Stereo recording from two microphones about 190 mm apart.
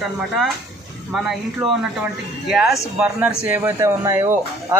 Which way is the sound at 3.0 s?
5° right (ahead or behind).